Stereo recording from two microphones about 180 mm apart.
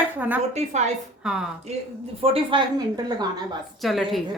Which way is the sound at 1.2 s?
5° right (ahead or behind).